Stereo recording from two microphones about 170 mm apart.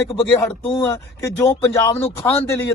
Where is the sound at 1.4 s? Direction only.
15° left (ahead or behind).